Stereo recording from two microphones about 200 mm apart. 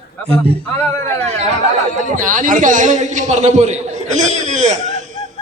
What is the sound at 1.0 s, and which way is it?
A man's voice, 35° right (ahead or behind).